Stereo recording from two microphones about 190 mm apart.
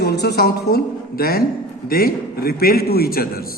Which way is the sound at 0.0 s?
55° left (ahead or behind).